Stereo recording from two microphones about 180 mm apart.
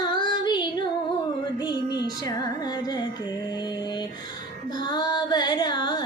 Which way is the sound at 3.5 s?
25° left (ahead or behind).